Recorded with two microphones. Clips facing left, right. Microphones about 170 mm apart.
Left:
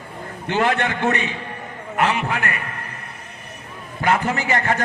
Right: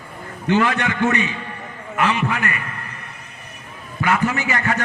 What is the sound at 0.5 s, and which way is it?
A man's voice, 35° left (ahead or behind).